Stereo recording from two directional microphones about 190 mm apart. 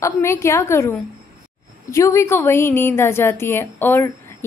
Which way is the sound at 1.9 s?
15° left (ahead or behind).